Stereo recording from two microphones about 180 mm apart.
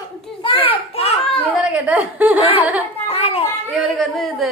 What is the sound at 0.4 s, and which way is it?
Children playing, 30° left (ahead or behind).